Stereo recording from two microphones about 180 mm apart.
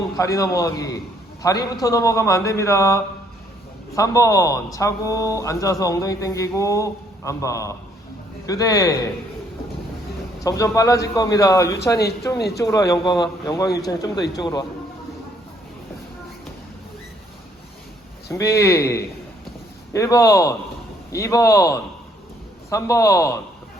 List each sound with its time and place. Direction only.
0.2 s a man's voice: 20° left (ahead or behind)
10.4 s a man's voice: 20° left (ahead or behind)
18.3 s a man's voice: 15° left (ahead or behind)